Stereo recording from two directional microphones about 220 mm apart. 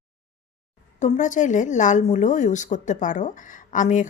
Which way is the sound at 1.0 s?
35° left (ahead or behind).